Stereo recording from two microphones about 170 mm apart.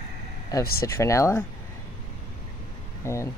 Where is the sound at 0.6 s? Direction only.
65° left (ahead or behind).